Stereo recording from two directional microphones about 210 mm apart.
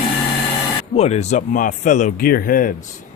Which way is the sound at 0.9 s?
30° left (ahead or behind).